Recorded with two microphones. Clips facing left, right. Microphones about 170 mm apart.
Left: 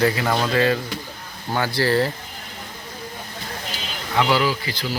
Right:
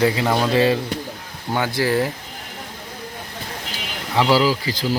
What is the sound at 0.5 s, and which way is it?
Speech, 25° right (ahead or behind).